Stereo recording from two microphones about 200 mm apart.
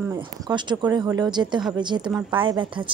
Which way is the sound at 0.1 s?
20° right (ahead or behind).